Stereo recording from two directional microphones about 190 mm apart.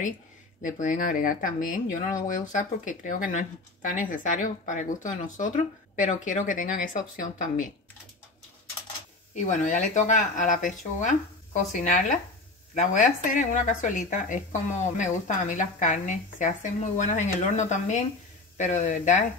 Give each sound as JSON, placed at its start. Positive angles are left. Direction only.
{"t": 0.6, "sound": "speech", "side_deg": 40}
{"t": 9.3, "sound": "speech", "side_deg": 40}